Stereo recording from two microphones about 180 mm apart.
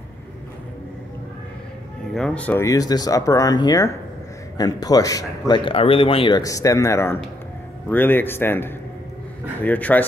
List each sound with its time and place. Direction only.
2.1 s speech: 5° left (ahead or behind)
5.5 s speech: 30° left (ahead or behind); by 10.0 s 10° left (ahead or behind)